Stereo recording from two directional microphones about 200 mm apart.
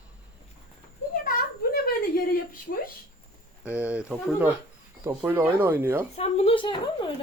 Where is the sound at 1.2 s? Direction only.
50° left (ahead or behind).